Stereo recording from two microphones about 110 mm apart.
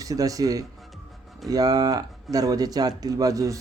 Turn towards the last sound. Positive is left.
turn(degrees=-30)  # may be behind; listen again after turning